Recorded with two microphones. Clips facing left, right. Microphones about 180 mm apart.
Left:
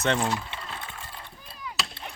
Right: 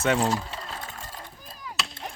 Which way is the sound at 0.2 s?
40° right (ahead or behind).